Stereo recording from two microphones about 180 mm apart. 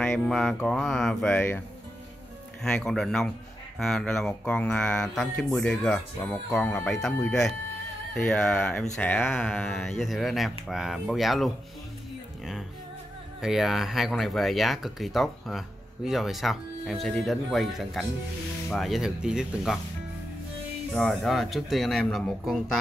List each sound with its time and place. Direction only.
0.0 s speech: 5° left (ahead or behind)
2.6 s speech: centre (ahead or behind)
13.4 s speech: centre (ahead or behind)
20.9 s speech: centre (ahead or behind)